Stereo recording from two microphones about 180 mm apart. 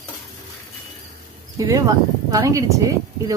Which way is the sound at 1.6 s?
15° right (ahead or behind).